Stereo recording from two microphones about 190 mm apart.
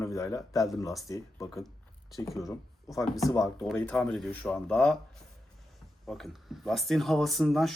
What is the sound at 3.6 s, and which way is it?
Speech, 5° left (ahead or behind).